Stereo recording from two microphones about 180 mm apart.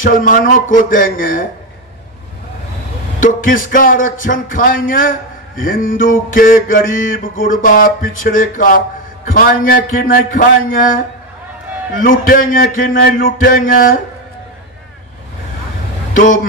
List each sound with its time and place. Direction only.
0.0 s speech: 50° left (ahead or behind)
3.2 s speech: 50° left (ahead or behind)
16.1 s speech: 50° left (ahead or behind)